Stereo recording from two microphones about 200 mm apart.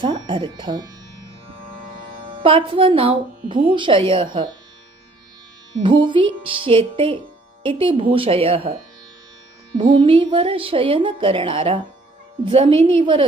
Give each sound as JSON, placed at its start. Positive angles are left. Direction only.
{"t": 0.0, "sound": "speech", "side_deg": -25}
{"t": 2.2, "sound": "speech", "side_deg": -25}
{"t": 5.8, "sound": "speech", "side_deg": -25}
{"t": 9.7, "sound": "speech", "side_deg": -25}